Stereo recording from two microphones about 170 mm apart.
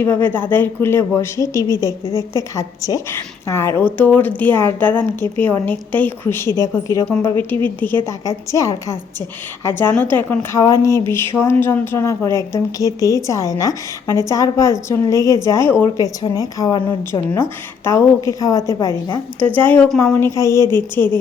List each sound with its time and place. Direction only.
0.0 s a woman's voice: 10° left (ahead or behind)